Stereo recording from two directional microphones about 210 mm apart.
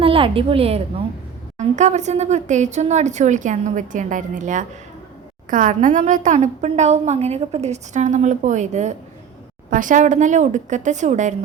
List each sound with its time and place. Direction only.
0.0 s a woman's voice: 25° right (ahead or behind)